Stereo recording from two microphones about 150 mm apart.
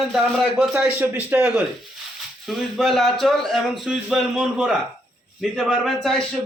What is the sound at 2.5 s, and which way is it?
Speech, centre (ahead or behind).